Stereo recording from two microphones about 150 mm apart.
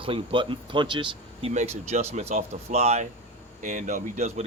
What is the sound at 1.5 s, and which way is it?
Speech, 50° right (ahead or behind).